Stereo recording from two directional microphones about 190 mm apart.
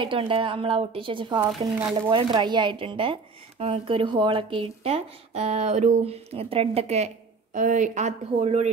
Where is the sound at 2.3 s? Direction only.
25° right (ahead or behind).